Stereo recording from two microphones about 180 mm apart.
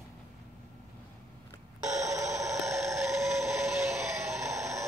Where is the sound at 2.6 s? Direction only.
Centre (ahead or behind).